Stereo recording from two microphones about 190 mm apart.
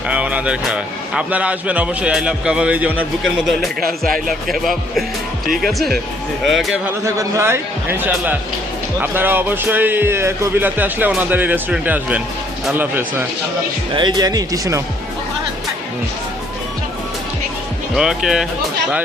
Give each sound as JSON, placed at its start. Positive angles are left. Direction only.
{"t": 0.1, "sound": "a man's voice", "side_deg": -5}
{"t": 7.0, "sound": "a man's voice", "side_deg": -15}
{"t": 13.9, "sound": "speech", "side_deg": -20}
{"t": 17.9, "sound": "a man's voice", "side_deg": -5}